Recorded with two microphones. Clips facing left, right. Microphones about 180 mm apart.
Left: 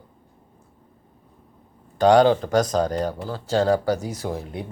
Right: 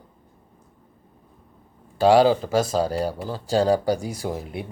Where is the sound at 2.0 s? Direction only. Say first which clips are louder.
Left 1 dB; 5° right (ahead or behind).